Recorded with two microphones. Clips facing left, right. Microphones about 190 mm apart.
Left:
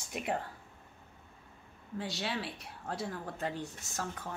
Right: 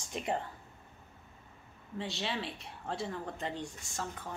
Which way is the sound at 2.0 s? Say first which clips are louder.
Even; centre (ahead or behind).